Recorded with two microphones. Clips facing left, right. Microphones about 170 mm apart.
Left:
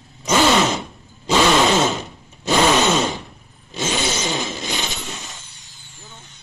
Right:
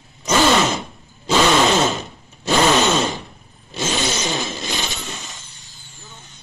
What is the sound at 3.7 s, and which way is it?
Vehicle, 10° left (ahead or behind).